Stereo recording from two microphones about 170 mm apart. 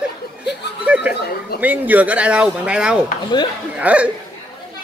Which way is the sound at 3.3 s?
25° left (ahead or behind).